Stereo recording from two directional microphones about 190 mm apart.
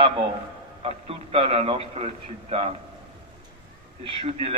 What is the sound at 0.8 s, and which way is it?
A man's voice, 30° right (ahead or behind).